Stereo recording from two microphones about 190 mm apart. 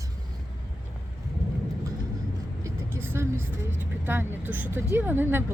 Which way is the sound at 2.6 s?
10° right (ahead or behind).